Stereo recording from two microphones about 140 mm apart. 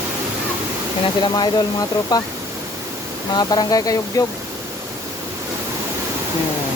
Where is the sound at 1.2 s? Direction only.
30° left (ahead or behind).